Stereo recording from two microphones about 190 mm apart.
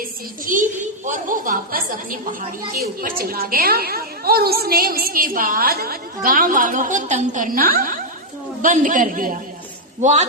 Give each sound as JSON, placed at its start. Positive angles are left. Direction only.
{"t": 0.0, "sound": "a woman's voice", "side_deg": -45}